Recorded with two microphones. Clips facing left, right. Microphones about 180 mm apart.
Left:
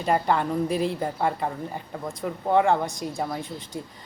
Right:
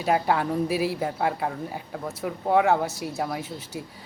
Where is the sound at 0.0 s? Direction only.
5° right (ahead or behind).